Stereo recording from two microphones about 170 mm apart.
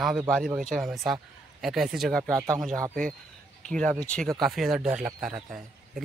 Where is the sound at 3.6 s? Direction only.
5° left (ahead or behind).